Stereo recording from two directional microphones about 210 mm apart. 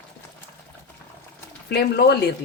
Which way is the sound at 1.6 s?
50° left (ahead or behind).